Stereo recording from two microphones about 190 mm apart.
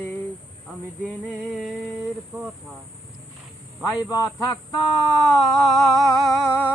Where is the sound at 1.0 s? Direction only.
Centre (ahead or behind).